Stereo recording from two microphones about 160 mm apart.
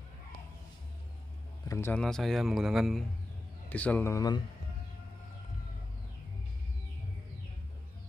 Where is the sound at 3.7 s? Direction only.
10° left (ahead or behind).